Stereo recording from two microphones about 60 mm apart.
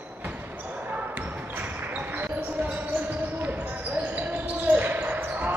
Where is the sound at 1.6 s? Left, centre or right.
Right.